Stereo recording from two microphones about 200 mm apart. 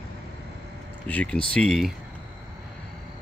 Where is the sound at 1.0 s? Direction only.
5° left (ahead or behind).